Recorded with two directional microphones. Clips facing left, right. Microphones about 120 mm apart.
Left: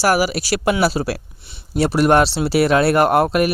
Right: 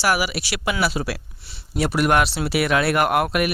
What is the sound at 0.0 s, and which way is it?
Speech, 40° left (ahead or behind).